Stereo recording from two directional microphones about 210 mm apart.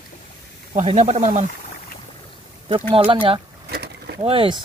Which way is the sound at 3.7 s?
50° right (ahead or behind).